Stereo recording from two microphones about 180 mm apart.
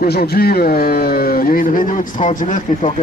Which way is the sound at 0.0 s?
60° left (ahead or behind).